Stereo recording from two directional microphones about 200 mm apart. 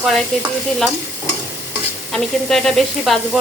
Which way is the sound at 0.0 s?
Centre (ahead or behind).